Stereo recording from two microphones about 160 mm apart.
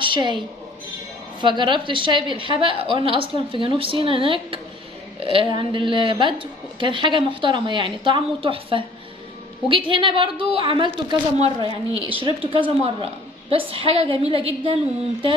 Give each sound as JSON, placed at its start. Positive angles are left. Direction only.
{"t": 0.0, "sound": "a woman's voice", "side_deg": -30}
{"t": 1.4, "sound": "a woman's voice", "side_deg": -30}